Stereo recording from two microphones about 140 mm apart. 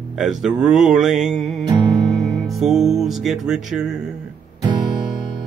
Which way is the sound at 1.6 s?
30° right (ahead or behind).